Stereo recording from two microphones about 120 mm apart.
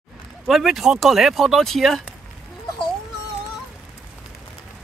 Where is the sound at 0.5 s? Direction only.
Centre (ahead or behind).